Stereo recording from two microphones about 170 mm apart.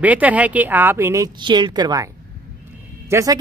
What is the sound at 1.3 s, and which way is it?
Speech, 25° right (ahead or behind).